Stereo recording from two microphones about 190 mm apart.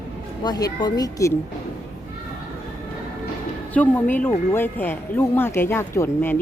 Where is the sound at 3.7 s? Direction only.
10° left (ahead or behind).